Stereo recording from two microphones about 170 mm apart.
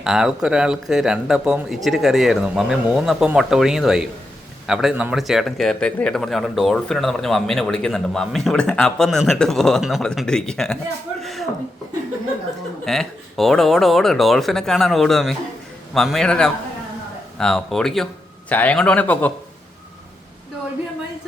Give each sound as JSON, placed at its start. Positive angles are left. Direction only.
{"t": 0.0, "sound": "a man's voice", "side_deg": -5}
{"t": 11.2, "sound": "a sound", "side_deg": 0}
{"t": 12.8, "sound": "a man's voice", "side_deg": 0}